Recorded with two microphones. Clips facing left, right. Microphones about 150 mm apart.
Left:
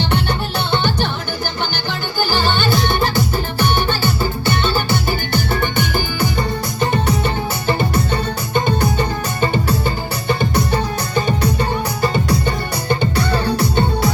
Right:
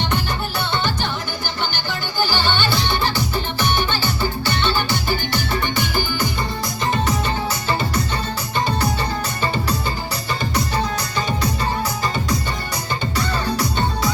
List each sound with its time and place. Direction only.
2.2 s music: 45° left (ahead or behind)
4.4 s music: 50° left (ahead or behind)